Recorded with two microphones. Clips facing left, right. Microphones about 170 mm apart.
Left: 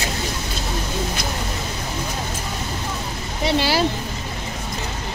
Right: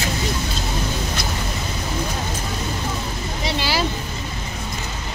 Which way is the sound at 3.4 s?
55° left (ahead or behind).